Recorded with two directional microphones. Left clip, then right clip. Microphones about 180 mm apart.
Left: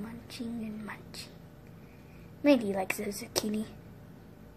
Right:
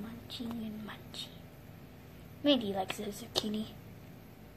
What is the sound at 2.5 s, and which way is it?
Speech, 30° left (ahead or behind).